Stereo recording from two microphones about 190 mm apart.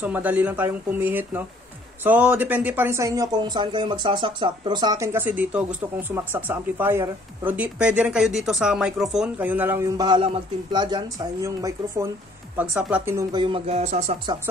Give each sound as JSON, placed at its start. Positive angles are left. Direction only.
{"t": 0.0, "sound": "speech", "side_deg": -10}